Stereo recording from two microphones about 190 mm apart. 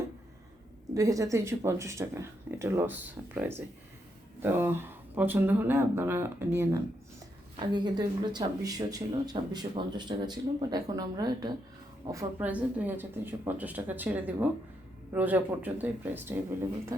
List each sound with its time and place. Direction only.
0.9 s speech: 15° right (ahead or behind)
7.5 s speech: 25° right (ahead or behind)
12.4 s speech: 10° right (ahead or behind)